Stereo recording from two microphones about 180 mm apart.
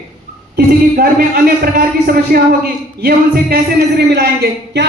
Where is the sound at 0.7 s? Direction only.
55° right (ahead or behind).